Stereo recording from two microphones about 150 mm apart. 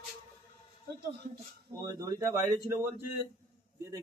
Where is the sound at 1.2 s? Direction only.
50° right (ahead or behind).